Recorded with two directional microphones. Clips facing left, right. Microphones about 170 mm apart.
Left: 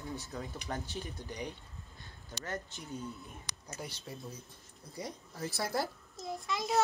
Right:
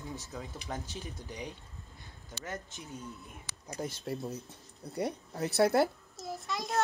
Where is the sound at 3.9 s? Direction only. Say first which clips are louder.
Right 8 dB; 65° right (ahead or behind).